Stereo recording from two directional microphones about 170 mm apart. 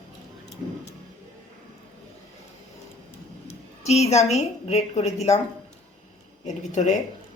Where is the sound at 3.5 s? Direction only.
40° left (ahead or behind).